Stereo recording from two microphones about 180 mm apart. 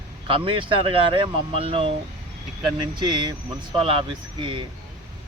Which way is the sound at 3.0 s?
25° right (ahead or behind).